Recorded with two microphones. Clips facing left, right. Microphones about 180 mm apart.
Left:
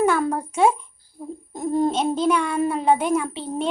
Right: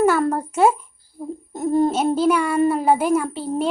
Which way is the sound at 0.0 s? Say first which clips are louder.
Right 3 dB; 5° right (ahead or behind).